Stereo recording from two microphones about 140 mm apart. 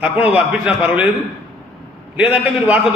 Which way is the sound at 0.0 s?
10° right (ahead or behind).